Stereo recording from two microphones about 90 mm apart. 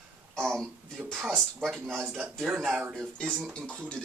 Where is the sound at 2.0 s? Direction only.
25° right (ahead or behind).